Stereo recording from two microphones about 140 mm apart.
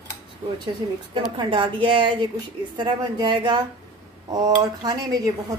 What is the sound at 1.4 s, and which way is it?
Speech, 35° right (ahead or behind).